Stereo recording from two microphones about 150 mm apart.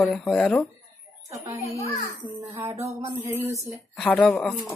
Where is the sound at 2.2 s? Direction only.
15° right (ahead or behind).